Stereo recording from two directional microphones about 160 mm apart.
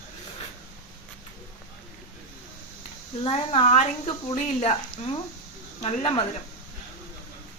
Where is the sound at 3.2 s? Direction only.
40° left (ahead or behind).